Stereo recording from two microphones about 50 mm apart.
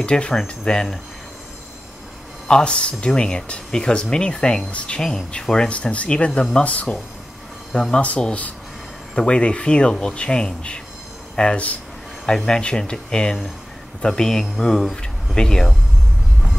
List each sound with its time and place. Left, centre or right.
0.0 s speech: centre
2.4 s speech: centre
5.7 s speech: left
9.1 s speech: left